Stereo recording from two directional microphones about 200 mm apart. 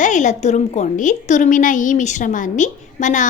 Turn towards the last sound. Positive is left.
turn(degrees=40)  # may be behind; listen again after turning